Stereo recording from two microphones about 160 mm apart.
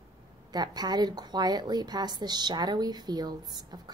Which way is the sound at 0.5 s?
25° right (ahead or behind).